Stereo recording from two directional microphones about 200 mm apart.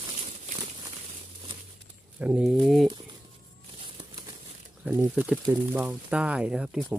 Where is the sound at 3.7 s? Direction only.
25° right (ahead or behind).